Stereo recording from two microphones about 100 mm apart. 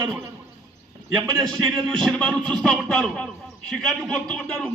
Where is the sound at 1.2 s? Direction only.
35° right (ahead or behind).